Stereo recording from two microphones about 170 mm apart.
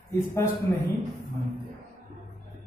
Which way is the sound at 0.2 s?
20° left (ahead or behind).